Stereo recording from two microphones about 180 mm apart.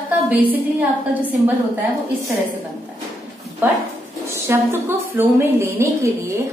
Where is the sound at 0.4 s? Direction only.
10° right (ahead or behind).